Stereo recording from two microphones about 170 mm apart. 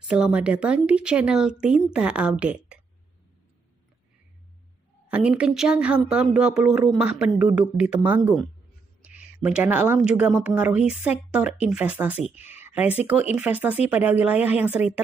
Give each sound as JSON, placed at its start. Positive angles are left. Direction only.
{"t": 0.1, "sound": "speech", "side_deg": -5}
{"t": 5.0, "sound": "speech", "side_deg": -5}
{"t": 9.0, "sound": "a sound", "side_deg": -10}
{"t": 9.9, "sound": "speech", "side_deg": -5}